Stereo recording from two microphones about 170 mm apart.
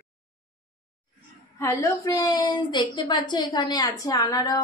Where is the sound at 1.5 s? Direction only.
20° left (ahead or behind).